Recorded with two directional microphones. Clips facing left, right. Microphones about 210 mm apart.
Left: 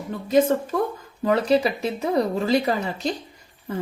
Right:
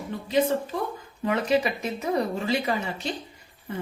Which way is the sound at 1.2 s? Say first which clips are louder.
Left 4 dB; 35° left (ahead or behind).